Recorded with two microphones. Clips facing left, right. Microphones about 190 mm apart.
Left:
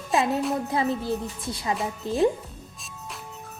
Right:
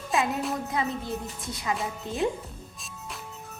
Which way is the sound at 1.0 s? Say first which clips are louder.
Left 5 dB; 30° left (ahead or behind).